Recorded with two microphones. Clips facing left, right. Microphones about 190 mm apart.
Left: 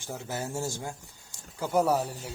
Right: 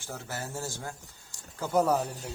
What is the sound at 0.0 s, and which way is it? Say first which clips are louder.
Speech: left 3 dB; 15° left (ahead or behind).